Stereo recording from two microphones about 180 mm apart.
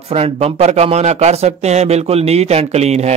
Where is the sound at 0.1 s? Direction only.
35° right (ahead or behind).